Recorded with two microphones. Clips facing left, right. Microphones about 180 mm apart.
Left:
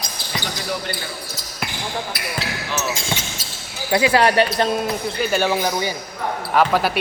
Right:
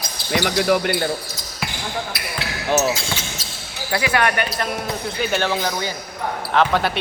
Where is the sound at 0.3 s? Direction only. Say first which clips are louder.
Right 9 dB; 60° right (ahead or behind).